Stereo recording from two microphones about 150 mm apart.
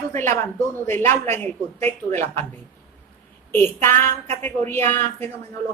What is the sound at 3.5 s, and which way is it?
A woman's voice, 15° left (ahead or behind).